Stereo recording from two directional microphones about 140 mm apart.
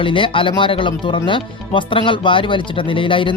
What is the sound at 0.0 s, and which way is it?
Speech, 40° left (ahead or behind).